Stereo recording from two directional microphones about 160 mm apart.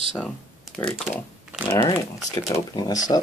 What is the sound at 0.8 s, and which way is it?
Speech, centre (ahead or behind).